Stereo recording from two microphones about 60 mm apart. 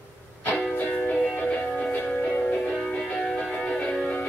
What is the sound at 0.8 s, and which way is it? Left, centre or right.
Music, left.